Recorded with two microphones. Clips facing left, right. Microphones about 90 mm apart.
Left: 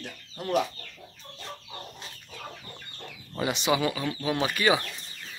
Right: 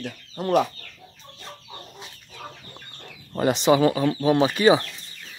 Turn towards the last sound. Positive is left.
turn(degrees=-25)  # may be behind; listen again after turning